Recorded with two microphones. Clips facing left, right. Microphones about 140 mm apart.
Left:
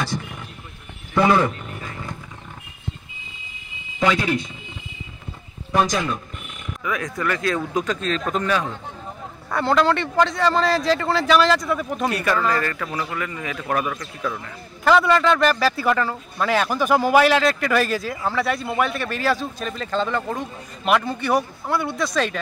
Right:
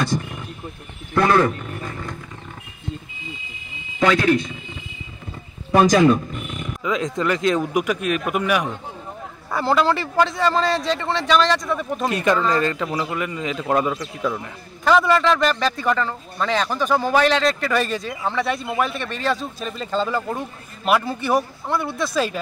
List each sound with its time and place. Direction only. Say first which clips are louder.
1.1 s speech: even; 10° left (ahead or behind)
4.0 s speech: right 3 dB; 10° left (ahead or behind)
6.8 s speech: right 3 dB; 20° right (ahead or behind)
9.5 s a man's voice: even; centre (ahead or behind)
12.1 s a man's voice: right 3 dB; 20° right (ahead or behind)
14.9 s a man's voice: even; centre (ahead or behind)